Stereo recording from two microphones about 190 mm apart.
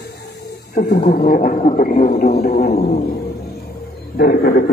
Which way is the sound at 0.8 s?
40° left (ahead or behind).